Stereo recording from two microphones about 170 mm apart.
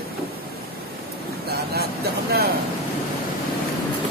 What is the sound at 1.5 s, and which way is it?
Vehicle, 70° right (ahead or behind).